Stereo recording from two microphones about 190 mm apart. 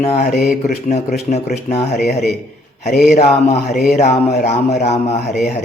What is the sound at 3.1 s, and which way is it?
Speech, 35° left (ahead or behind).